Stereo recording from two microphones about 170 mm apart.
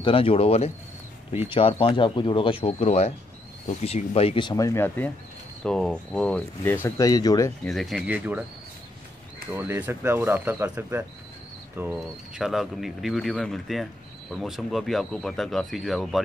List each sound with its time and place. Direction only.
0.0 s speech: 30° left (ahead or behind)
7.6 s speech: centre (ahead or behind)
9.5 s speech: 10° right (ahead or behind)